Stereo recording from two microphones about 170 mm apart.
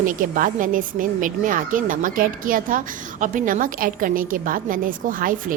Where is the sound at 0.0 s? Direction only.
50° right (ahead or behind).